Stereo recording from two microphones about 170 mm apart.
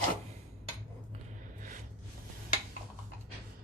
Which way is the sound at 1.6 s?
50° right (ahead or behind).